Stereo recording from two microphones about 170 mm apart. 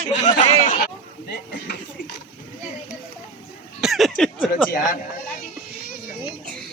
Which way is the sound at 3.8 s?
Centre (ahead or behind).